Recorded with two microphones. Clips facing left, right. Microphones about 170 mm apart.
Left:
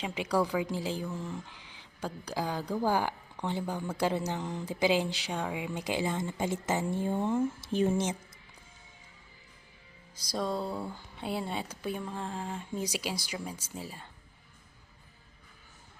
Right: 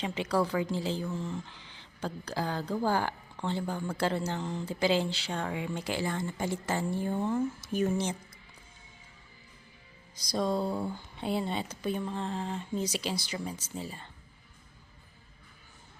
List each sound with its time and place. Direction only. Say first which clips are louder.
0.0 s speech: even; 10° left (ahead or behind)
7.6 s a woman's voice: left 1 dB; 30° left (ahead or behind)
10.2 s speech: right 3 dB; 5° left (ahead or behind)